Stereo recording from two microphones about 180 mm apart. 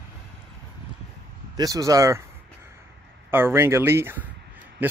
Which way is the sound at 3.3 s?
15° right (ahead or behind).